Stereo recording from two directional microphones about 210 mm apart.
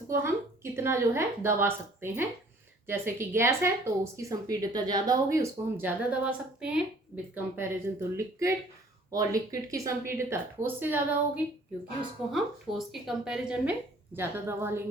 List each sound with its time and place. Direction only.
0.1 s a woman's voice: 10° right (ahead or behind)
12.3 s speech: centre (ahead or behind)